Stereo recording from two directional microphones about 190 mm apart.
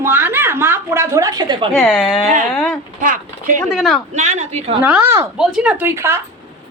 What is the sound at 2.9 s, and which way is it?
Speech, 45° right (ahead or behind).